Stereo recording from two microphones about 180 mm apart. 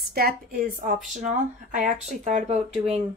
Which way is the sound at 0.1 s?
60° right (ahead or behind).